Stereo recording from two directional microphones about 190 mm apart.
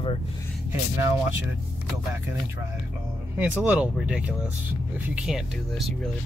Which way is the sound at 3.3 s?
10° right (ahead or behind).